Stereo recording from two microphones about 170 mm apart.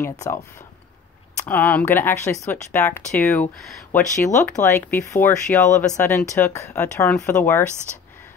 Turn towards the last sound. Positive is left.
turn(degrees=15)  # may be behind; listen again after turning